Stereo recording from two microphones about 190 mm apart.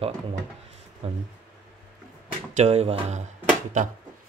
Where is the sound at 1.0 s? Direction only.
30° right (ahead or behind).